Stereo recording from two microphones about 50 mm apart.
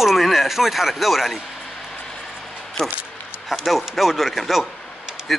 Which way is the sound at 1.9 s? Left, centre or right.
Centre.